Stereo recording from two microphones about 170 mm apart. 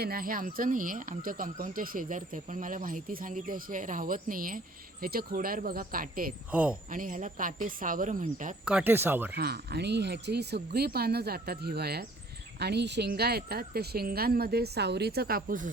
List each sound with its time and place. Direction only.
0.0 s speech: 60° right (ahead or behind)
6.5 s speech: 10° right (ahead or behind)
6.9 s speech: 50° right (ahead or behind)
8.6 s speech: 10° right (ahead or behind)
9.3 s speech: 70° right (ahead or behind); by 15.7 s 50° right (ahead or behind)